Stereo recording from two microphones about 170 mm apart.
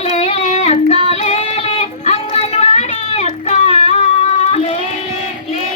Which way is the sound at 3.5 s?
40° left (ahead or behind).